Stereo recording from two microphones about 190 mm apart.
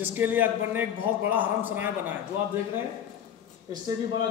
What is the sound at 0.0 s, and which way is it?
A man's voice, 10° right (ahead or behind).